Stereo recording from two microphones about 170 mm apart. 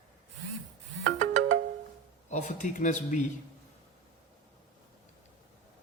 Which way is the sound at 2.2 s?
45° left (ahead or behind).